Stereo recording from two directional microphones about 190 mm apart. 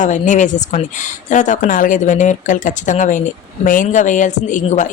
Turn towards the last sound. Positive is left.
turn(degrees=40)  # may be behind; listen again after turning